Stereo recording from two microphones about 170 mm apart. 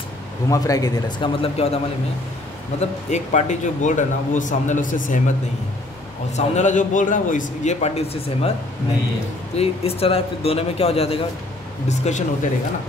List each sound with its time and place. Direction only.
0.5 s a man's voice: 20° left (ahead or behind)
2.8 s speech: 45° left (ahead or behind)
6.3 s speech: 45° left (ahead or behind)
9.6 s a man's voice: 35° left (ahead or behind)